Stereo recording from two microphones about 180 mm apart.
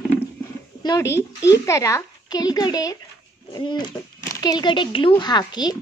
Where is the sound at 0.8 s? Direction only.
20° left (ahead or behind).